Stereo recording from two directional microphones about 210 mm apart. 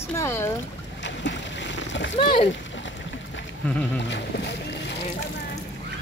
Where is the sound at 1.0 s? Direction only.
60° left (ahead or behind).